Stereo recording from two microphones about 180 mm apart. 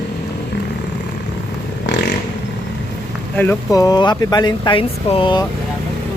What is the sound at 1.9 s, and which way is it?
Vehicle, 75° left (ahead or behind).